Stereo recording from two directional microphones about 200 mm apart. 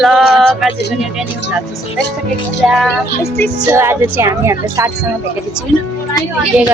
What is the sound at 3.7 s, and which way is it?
Speech, 10° right (ahead or behind).